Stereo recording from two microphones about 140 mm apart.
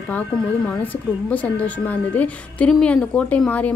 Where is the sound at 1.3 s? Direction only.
10° left (ahead or behind).